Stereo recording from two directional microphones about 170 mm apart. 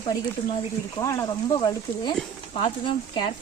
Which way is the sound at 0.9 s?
15° left (ahead or behind).